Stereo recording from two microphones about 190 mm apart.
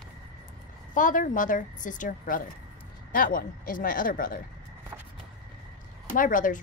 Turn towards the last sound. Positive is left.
turn(degrees=45)  # may be behind; listen again after turning